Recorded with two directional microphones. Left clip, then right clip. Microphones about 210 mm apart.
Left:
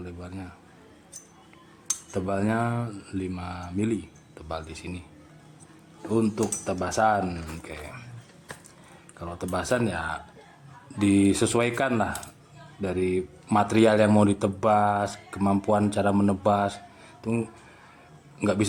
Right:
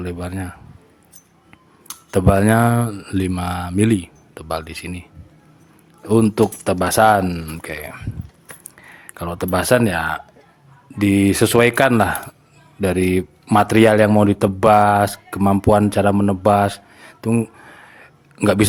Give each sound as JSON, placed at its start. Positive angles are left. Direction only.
{"t": 0.0, "sound": "speech", "side_deg": -40}
{"t": 2.0, "sound": "speech", "side_deg": -50}
{"t": 6.1, "sound": "speech", "side_deg": -40}
{"t": 9.1, "sound": "speech", "side_deg": -45}